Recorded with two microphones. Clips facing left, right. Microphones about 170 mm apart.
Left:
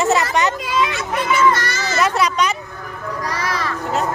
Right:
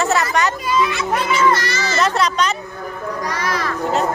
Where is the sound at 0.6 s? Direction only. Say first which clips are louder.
Right 2 dB; 90° left.